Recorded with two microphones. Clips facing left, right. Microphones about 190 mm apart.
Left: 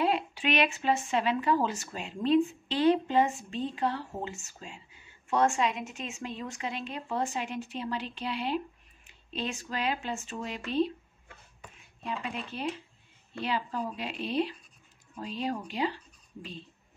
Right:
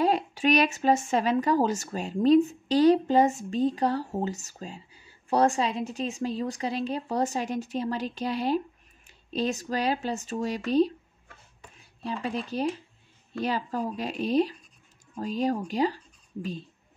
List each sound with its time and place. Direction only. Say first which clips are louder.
0.0 s speech: right 4 dB; 40° right (ahead or behind)